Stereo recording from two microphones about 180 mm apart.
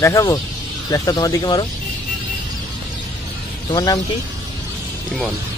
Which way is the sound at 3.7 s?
20° left (ahead or behind).